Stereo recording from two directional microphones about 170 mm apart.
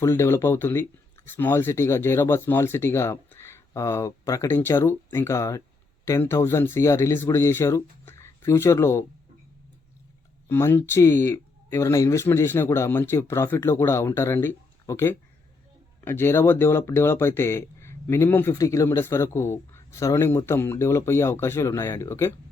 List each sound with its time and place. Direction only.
0.0 s speech: 15° left (ahead or behind)
10.5 s speech: 15° left (ahead or behind)